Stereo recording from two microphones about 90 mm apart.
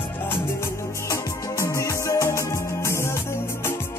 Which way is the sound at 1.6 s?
35° left (ahead or behind).